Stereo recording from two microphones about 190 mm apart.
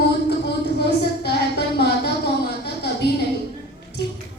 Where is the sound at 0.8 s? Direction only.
60° left (ahead or behind).